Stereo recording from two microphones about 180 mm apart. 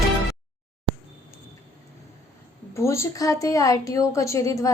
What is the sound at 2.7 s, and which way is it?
A woman's voice, 15° left (ahead or behind).